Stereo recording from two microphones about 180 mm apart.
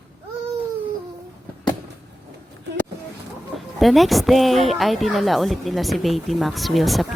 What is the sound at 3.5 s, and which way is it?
A woman's voice, centre (ahead or behind).